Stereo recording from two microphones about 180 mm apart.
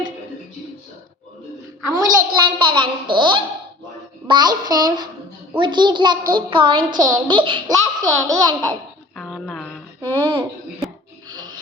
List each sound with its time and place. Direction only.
1.9 s a child's voice: 20° right (ahead or behind)
9.1 s a sound: centre (ahead or behind)
10.2 s a child's voice: 25° right (ahead or behind)